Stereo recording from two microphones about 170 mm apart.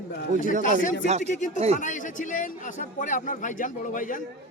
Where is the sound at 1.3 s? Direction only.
45° left (ahead or behind).